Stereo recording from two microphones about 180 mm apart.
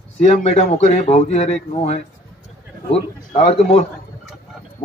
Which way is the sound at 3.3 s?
35° left (ahead or behind).